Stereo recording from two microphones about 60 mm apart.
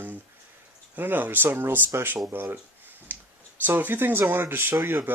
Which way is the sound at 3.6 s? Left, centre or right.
Right.